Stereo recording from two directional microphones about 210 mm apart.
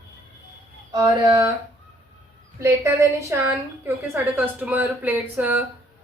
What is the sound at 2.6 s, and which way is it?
A woman's voice, 15° right (ahead or behind).